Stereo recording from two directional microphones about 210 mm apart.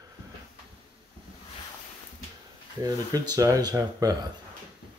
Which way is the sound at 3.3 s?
15° right (ahead or behind).